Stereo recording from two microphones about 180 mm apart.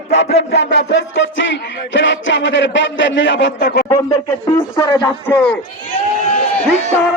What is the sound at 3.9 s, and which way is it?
Speech, 20° left (ahead or behind).